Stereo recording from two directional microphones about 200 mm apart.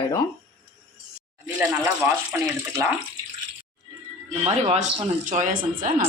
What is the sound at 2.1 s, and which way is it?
Speech, 15° right (ahead or behind).